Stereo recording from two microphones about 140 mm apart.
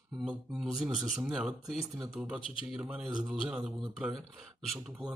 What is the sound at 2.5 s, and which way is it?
Speech, 40° left (ahead or behind).